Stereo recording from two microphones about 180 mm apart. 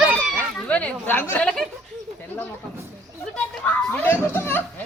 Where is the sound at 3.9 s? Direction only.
10° left (ahead or behind).